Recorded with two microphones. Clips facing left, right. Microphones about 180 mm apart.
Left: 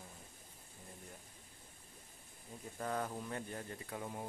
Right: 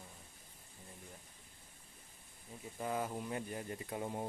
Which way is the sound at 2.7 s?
10° right (ahead or behind).